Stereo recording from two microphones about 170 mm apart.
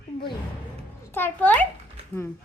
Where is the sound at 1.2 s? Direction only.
10° left (ahead or behind).